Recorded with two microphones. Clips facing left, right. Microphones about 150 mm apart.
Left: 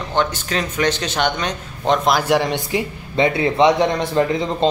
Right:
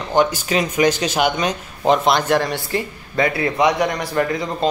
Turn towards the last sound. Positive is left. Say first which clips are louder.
# left 2 dB
turn(degrees=25)  # may be behind; listen again after turning